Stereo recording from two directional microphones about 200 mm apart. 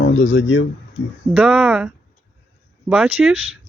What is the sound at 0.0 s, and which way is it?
Speech, 70° left (ahead or behind).